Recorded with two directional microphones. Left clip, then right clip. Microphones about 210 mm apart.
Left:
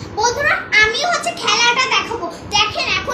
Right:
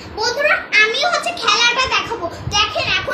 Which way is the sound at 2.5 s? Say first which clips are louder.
Even; 40° left (ahead or behind).